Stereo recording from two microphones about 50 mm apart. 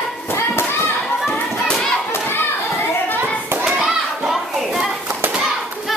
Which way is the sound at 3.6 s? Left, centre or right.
Centre.